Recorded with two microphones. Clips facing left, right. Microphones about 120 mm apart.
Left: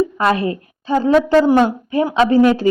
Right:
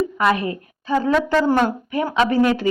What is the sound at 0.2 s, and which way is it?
A woman's voice, 30° left (ahead or behind).